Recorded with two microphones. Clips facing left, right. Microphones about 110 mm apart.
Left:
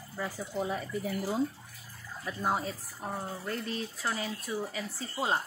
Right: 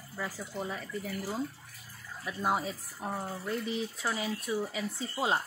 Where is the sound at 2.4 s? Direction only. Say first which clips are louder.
Right 1 dB; 10° right (ahead or behind).